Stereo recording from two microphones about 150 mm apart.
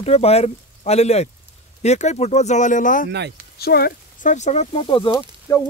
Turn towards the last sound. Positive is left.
turn(degrees=20)  # may be behind; listen again after turning